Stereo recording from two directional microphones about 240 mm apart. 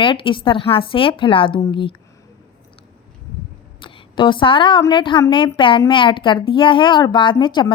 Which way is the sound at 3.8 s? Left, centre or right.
Centre.